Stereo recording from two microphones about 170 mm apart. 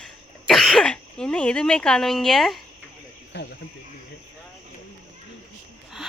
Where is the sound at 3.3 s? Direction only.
90° left.